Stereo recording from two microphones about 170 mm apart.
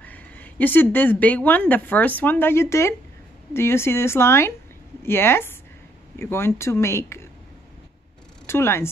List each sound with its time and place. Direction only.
0.0 s a woman's voice: 10° left (ahead or behind)
8.5 s speech: 15° left (ahead or behind)